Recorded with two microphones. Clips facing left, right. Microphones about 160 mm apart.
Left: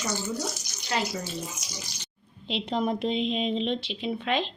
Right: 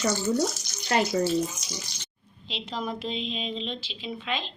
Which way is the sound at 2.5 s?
55° left (ahead or behind).